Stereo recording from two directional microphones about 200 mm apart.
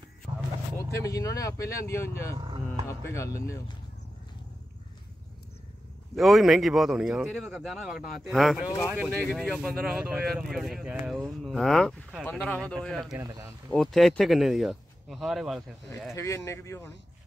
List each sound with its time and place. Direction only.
0.7 s speech: 15° left (ahead or behind)
2.3 s speech: 25° right (ahead or behind)
2.9 s speech: 15° left (ahead or behind)
6.1 s speech: centre (ahead or behind)
13.1 s speech: 20° right (ahead or behind)
13.7 s speech: centre (ahead or behind)
16.2 s speech: 15° left (ahead or behind)